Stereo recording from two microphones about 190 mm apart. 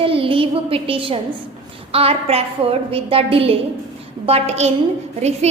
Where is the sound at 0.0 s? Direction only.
30° right (ahead or behind).